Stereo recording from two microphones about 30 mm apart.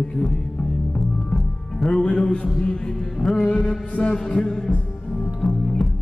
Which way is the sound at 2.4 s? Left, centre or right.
Left.